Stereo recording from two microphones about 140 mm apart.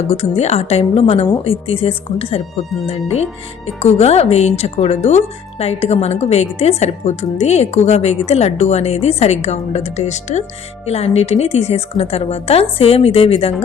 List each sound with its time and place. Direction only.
0.1 s speech: 50° left (ahead or behind)